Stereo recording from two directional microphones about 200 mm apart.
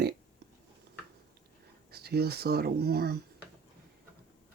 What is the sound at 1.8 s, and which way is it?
Speech, 50° right (ahead or behind).